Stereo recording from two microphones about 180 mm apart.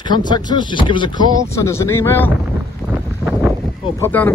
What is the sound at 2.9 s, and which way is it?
Wind, 10° right (ahead or behind).